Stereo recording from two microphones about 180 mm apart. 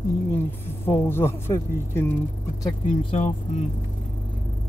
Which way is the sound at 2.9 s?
40° left (ahead or behind).